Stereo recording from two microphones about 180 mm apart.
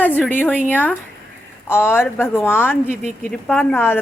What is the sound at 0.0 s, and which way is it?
A woman's voice, 10° left (ahead or behind).